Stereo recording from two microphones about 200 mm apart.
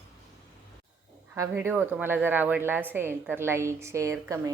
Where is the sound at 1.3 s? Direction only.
10° right (ahead or behind).